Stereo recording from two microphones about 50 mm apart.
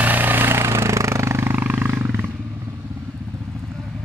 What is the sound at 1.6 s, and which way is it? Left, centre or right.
Wild animals, right.